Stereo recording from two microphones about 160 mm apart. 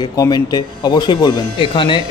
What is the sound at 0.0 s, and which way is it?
Speech, 25° left (ahead or behind).